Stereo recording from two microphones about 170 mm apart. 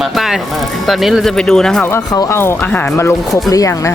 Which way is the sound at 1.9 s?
20° left (ahead or behind).